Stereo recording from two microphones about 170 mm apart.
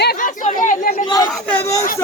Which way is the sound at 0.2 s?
45° left (ahead or behind).